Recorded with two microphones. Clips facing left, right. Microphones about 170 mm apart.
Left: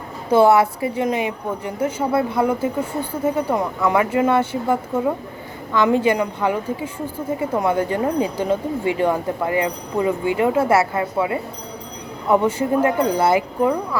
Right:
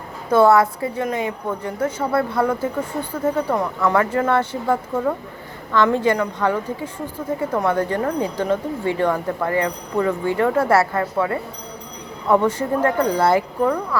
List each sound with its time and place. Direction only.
0.3 s a woman's voice: 25° left (ahead or behind); by 1.9 s 10° left (ahead or behind)
2.1 s a woman's voice: 20° left (ahead or behind)
3.2 s speech: 10° left (ahead or behind)
10.6 s a woman's voice: 20° left (ahead or behind); by 13.3 s 5° left (ahead or behind)
13.3 s speech: 15° left (ahead or behind)